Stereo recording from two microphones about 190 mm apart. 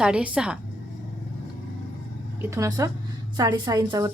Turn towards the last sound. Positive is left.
turn(degrees=-20)  # may be behind; listen again after turning